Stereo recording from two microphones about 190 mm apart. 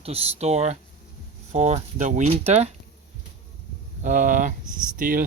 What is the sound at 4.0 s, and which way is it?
Speech, 40° right (ahead or behind).